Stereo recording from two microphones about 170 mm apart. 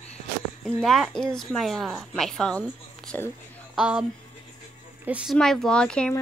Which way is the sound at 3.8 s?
5° right (ahead or behind).